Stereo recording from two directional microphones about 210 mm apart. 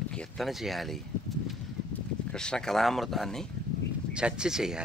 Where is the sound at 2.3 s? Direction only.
5° left (ahead or behind).